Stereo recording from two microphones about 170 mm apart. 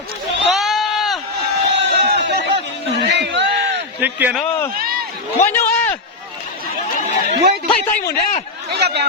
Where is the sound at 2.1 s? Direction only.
90° right.